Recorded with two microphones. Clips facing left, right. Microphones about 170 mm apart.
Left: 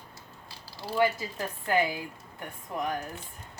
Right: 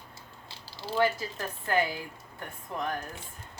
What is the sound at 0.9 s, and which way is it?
Speech, 15° left (ahead or behind).